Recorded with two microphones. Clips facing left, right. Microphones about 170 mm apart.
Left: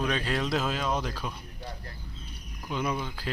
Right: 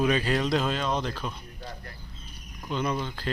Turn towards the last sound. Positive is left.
turn(degrees=5)  # may be behind; listen again after turning